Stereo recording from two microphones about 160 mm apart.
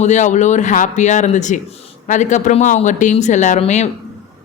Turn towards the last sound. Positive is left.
turn(degrees=45)  # may be behind; listen again after turning